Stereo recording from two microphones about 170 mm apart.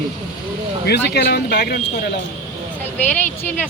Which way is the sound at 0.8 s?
75° left (ahead or behind).